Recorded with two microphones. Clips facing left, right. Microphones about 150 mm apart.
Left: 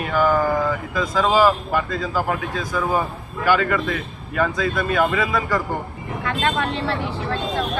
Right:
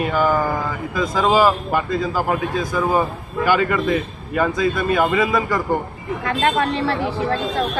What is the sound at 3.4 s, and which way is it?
A man's voice, 15° right (ahead or behind).